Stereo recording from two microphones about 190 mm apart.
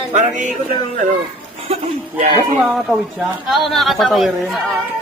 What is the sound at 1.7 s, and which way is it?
Speech, 35° right (ahead or behind).